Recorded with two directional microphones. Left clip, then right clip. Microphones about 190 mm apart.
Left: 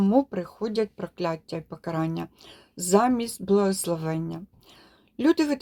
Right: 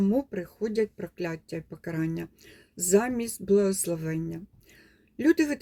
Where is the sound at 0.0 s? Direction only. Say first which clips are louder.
Left 5 dB; 10° right (ahead or behind).